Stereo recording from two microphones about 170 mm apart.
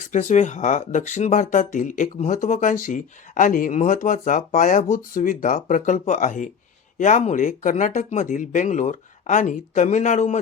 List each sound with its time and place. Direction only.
0.1 s speech: 45° left (ahead or behind)